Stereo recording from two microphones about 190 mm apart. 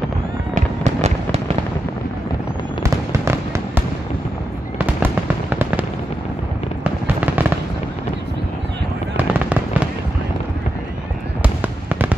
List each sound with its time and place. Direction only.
2.8 s fireworks: 15° right (ahead or behind)
6.8 s fireworks: 10° right (ahead or behind)
9.1 s fireworks: 10° right (ahead or behind)
11.4 s fireworks: 10° right (ahead or behind)